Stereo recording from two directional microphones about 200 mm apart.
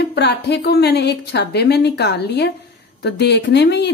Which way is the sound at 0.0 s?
60° left (ahead or behind).